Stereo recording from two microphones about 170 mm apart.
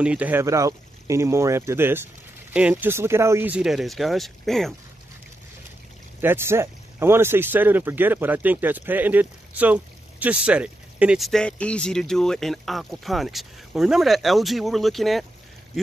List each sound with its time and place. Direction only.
0.0 s speech: 10° right (ahead or behind)
6.2 s speech: 15° right (ahead or behind)